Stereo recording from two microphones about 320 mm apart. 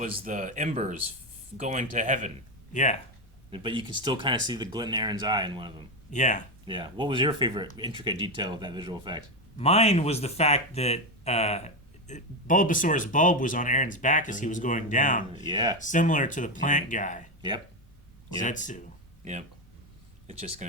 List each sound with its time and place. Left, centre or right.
0.0 s speech: right
2.7 s speech: left
3.5 s speech: centre
6.1 s speech: left
6.7 s speech: centre
9.6 s speech: centre
15.4 s speech: centre
15.8 s speech: left
18.4 s speech: left
19.2 s speech: right